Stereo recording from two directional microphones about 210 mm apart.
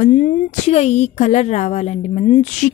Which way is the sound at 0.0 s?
35° left (ahead or behind).